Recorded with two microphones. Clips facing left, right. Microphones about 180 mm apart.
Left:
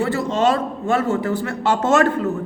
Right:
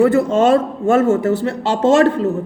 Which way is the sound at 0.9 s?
50° right (ahead or behind).